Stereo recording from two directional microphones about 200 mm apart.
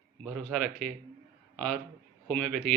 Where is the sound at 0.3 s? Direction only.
5° left (ahead or behind).